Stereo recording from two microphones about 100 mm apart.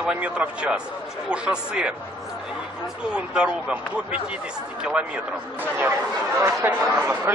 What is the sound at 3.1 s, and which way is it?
Speech, 10° right (ahead or behind).